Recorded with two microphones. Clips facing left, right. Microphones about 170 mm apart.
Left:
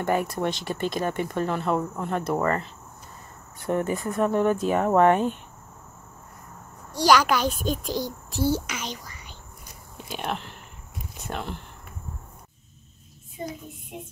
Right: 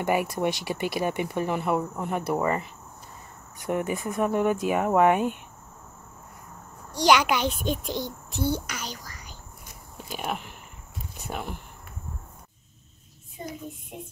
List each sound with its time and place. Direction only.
0.0 s speech: 15° right (ahead or behind)
7.1 s a child's voice: 20° right (ahead or behind)
8.5 s speech: 5° left (ahead or behind)
10.0 s speech: 5° right (ahead or behind)